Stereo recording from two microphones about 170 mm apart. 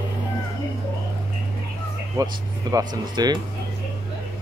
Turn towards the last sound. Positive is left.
turn(degrees=-25)  # may be behind; listen again after turning